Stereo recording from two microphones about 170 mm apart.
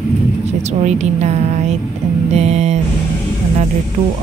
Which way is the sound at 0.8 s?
40° right (ahead or behind).